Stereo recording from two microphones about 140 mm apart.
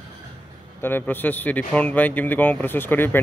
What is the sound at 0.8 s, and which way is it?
Speech, 15° left (ahead or behind).